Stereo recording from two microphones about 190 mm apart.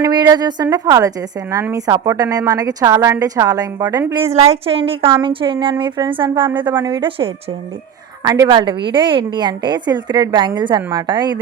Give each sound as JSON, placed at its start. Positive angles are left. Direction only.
{"t": 0.0, "sound": "a woman's voice", "side_deg": -20}
{"t": 4.2, "sound": "a woman's voice", "side_deg": -35}